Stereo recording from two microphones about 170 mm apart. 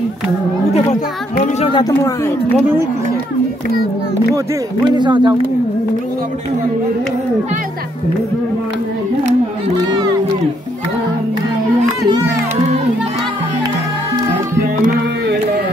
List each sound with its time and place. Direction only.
1.7 s speech: 25° left (ahead or behind)
4.9 s speech: 25° right (ahead or behind)